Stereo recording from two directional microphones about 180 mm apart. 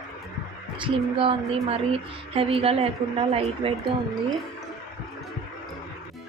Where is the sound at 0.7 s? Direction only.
30° right (ahead or behind).